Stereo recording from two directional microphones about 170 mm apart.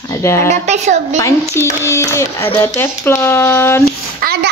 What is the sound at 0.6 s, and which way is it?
Speech, 45° right (ahead or behind).